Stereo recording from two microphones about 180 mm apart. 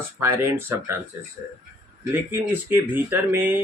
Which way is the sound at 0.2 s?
15° right (ahead or behind).